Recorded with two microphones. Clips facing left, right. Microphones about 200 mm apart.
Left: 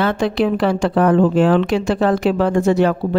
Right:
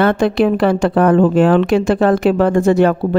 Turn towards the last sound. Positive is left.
turn(degrees=-50)  # may be behind; listen again after turning